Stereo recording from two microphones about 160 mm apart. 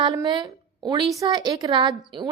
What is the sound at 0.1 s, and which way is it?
A woman's voice, 25° right (ahead or behind).